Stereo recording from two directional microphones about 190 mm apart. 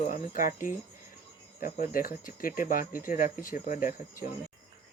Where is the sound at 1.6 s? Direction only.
45° left (ahead or behind).